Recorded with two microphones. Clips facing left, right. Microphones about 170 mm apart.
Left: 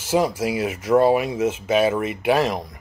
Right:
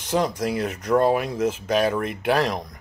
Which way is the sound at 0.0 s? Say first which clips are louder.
Left 3 dB; 5° left (ahead or behind).